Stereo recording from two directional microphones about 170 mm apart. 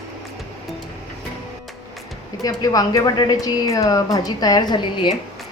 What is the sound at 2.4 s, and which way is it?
A woman's voice, 20° left (ahead or behind).